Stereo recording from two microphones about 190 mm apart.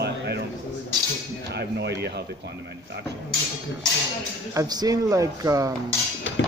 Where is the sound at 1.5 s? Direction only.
60° right (ahead or behind).